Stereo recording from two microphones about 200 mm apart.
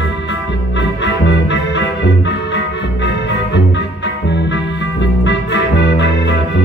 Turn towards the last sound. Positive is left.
turn(degrees=60)  # may be behind; listen again after turning